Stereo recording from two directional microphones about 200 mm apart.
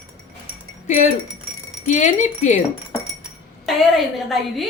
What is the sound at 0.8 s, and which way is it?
Speech, 35° left (ahead or behind).